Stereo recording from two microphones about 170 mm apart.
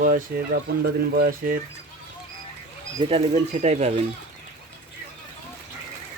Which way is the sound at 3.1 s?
35° right (ahead or behind).